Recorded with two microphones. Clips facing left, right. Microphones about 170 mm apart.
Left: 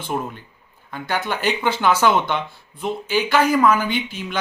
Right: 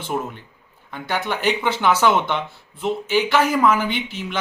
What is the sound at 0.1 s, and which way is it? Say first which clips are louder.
Speech: even; centre (ahead or behind).